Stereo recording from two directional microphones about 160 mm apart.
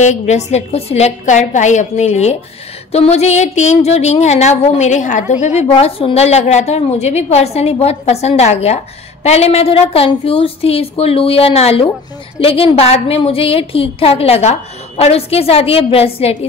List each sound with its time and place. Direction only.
0.0 s a woman's voice: 45° left (ahead or behind)